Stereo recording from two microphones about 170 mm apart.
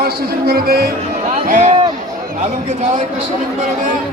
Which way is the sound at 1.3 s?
45° right (ahead or behind).